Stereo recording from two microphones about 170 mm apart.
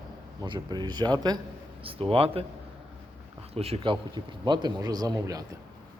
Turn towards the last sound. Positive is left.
turn(degrees=-20)  # may be behind; listen again after turning